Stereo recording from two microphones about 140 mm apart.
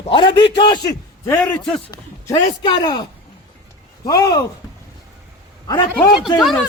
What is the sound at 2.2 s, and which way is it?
Speech, 30° left (ahead or behind).